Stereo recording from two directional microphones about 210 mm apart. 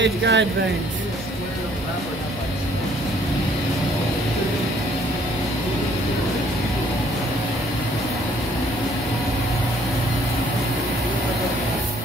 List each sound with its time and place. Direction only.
0.0 s speech: 55° right (ahead or behind)